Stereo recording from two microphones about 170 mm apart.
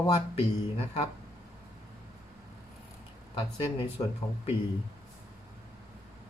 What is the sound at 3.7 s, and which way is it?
Speech, 35° left (ahead or behind).